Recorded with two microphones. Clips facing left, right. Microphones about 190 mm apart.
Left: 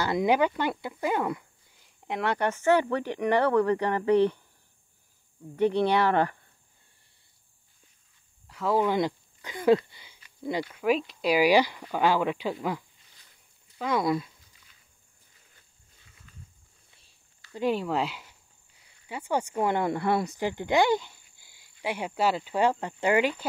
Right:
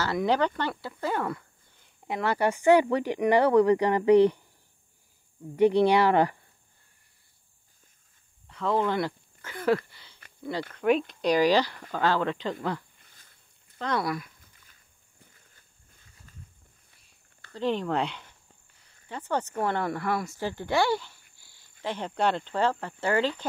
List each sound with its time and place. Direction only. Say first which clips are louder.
0.0 s speech: left 2 dB; 15° left (ahead or behind)
2.0 s speech: right 1 dB; centre (ahead or behind)
5.6 s speech: right 3 dB; 10° right (ahead or behind)
8.5 s speech: left 1 dB; 5° left (ahead or behind)
9.8 s a sound: left 1 dB; 15° left (ahead or behind)
10.7 s speech: right 4 dB; centre (ahead or behind)
12.9 s a sound: right 1 dB; 50° right (ahead or behind)
13.7 s speech: left 2 dB; 10° left (ahead or behind)
14.0 s speech: left 5 dB; 25° left (ahead or behind)
14.4 s a sound: right 2 dB; 55° right (ahead or behind)
17.5 s speech: left 1 dB; 10° left (ahead or behind)
21.4 s cricket: left 1 dB; 15° left (ahead or behind)
21.8 s speech: even; 10° left (ahead or behind)